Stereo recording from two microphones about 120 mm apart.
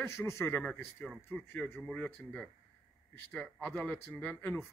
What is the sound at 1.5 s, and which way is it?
Speech, 15° left (ahead or behind).